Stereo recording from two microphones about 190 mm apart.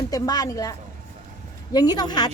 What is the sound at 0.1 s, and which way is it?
Speech, 20° left (ahead or behind).